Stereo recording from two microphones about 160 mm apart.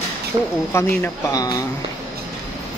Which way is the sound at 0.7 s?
20° left (ahead or behind).